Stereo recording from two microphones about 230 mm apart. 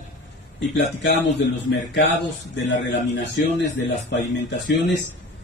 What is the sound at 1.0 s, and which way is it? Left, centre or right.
Speech, left.